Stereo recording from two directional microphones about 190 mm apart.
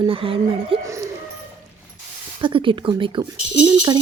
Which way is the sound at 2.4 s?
25° right (ahead or behind).